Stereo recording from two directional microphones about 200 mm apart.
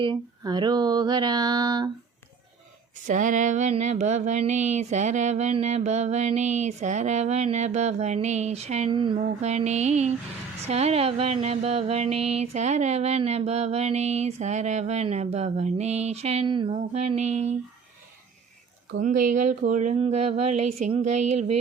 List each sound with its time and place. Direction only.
0.0 s a sound: 20° right (ahead or behind)
3.1 s speech: 40° right (ahead or behind)
18.9 s speech: 40° right (ahead or behind)